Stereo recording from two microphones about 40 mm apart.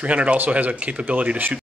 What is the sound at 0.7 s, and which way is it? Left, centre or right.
Speech, right.